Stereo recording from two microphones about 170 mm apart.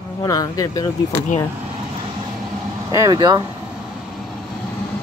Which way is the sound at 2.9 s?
20° right (ahead or behind).